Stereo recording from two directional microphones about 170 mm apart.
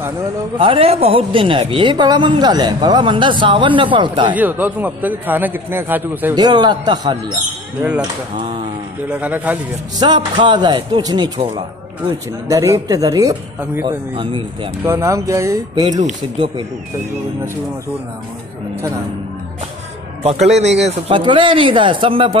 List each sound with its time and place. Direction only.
0.6 s a woman's voice: 35° right (ahead or behind)
4.4 s a man's voice: 10° right (ahead or behind)
6.3 s a woman's voice: 25° right (ahead or behind)
9.1 s a man's voice: 10° right (ahead or behind)
9.9 s a woman's voice: 25° right (ahead or behind)
13.8 s a woman's voice: 30° right (ahead or behind)
14.9 s a man's voice: 15° right (ahead or behind)
20.2 s speech: 40° right (ahead or behind)